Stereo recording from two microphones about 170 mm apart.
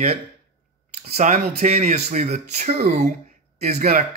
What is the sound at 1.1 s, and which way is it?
Speech, 45° right (ahead or behind).